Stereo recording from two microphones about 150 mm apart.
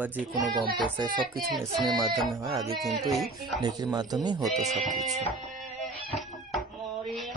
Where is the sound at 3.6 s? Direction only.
25° right (ahead or behind).